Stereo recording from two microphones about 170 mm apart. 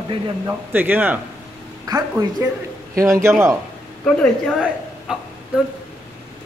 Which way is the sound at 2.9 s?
20° right (ahead or behind).